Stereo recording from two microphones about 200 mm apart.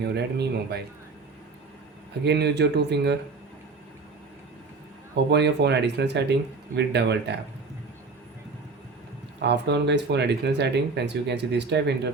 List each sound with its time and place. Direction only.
0.0 s speech: 55° right (ahead or behind)
2.2 s speech: 55° right (ahead or behind)
5.3 s speech: 55° right (ahead or behind)
9.4 s speech: 60° right (ahead or behind)